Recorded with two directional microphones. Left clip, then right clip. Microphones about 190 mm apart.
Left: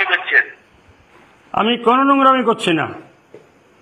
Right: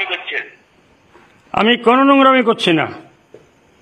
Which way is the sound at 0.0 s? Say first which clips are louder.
Left 7 dB; centre (ahead or behind).